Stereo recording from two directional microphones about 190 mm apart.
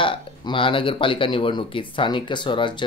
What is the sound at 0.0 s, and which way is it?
Speech, 25° left (ahead or behind).